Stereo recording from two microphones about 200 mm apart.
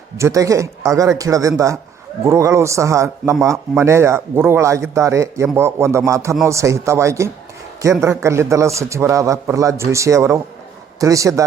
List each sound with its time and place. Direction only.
0.2 s speech: 15° right (ahead or behind)